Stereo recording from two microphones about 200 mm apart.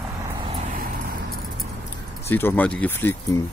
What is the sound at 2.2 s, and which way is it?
Speech, 10° left (ahead or behind).